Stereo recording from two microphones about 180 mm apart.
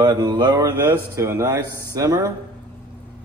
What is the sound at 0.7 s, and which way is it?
A man's voice, 10° right (ahead or behind).